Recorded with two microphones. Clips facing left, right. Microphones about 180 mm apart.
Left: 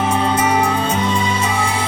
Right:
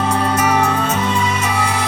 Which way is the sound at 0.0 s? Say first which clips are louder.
Even; 25° left (ahead or behind).